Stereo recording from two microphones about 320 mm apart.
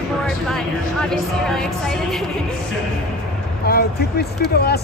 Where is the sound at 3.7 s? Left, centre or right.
Left.